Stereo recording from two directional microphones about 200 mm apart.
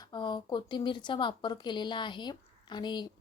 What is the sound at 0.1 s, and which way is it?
Speech, 20° left (ahead or behind).